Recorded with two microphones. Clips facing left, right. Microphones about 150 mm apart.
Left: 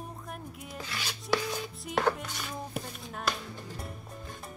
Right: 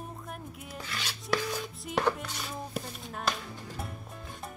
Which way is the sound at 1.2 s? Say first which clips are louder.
Left 1 dB; centre (ahead or behind).